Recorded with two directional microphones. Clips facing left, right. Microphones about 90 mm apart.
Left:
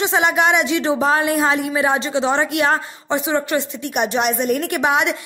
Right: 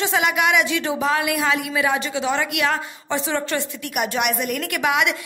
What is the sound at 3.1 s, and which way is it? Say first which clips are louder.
Speech: left 4 dB; 20° left (ahead or behind).